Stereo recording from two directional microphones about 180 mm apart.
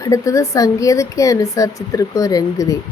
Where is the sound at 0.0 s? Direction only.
20° left (ahead or behind).